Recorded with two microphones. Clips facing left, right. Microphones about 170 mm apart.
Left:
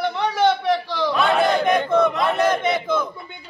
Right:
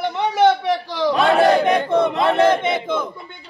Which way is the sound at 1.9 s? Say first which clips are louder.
Right 1 dB; 30° right (ahead or behind).